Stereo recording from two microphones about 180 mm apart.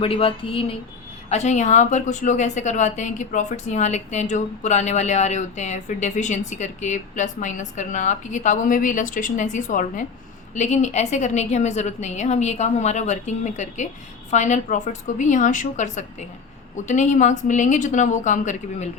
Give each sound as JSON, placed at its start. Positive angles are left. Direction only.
{"t": 0.0, "sound": "a woman's voice", "side_deg": 30}